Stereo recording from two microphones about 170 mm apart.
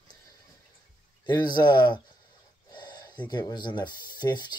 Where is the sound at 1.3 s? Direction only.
25° left (ahead or behind).